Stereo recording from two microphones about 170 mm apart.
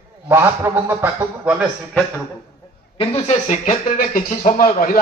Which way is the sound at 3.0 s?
35° left (ahead or behind).